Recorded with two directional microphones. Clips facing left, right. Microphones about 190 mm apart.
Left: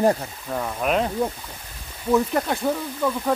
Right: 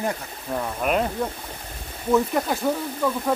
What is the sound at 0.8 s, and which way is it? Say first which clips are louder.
Speech: left 1 dB; centre (ahead or behind).